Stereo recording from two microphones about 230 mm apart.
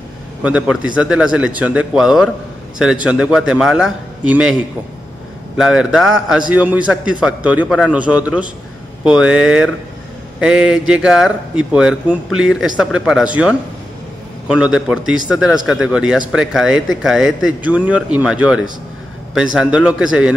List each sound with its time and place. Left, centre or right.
0.4 s a man's voice: centre
5.6 s a man's voice: centre